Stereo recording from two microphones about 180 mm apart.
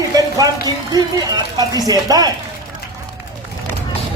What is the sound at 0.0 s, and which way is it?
Speech, 20° right (ahead or behind).